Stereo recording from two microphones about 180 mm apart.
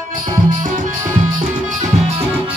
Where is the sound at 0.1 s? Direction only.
50° right (ahead or behind).